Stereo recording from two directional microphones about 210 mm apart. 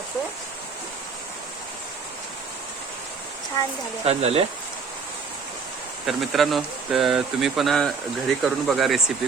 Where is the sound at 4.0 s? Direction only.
30° right (ahead or behind).